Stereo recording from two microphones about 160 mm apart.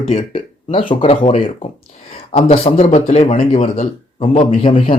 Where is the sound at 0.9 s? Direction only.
35° left (ahead or behind).